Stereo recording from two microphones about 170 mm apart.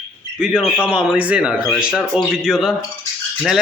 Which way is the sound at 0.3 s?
5° right (ahead or behind).